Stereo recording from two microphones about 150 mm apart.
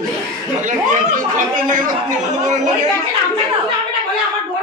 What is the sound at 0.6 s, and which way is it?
A man's voice, 55° right (ahead or behind).